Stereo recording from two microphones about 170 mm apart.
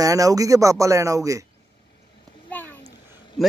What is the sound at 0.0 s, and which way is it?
Speech, 20° right (ahead or behind).